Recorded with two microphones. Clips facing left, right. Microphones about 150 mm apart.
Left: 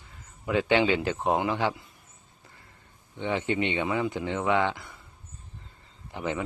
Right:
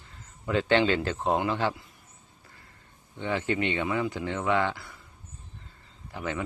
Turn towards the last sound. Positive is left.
turn(degrees=20)  # may be behind; listen again after turning